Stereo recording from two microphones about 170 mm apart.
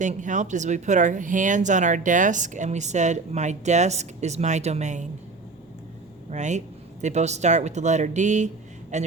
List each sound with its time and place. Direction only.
0.0 s speech: 45° right (ahead or behind)
6.3 s speech: 45° right (ahead or behind)